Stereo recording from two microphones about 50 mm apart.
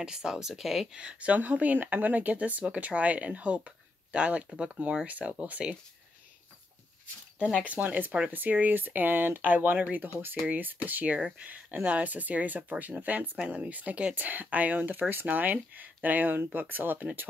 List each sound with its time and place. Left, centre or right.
0.0 s speech: centre
0.9 s speech: right
7.5 s speech: right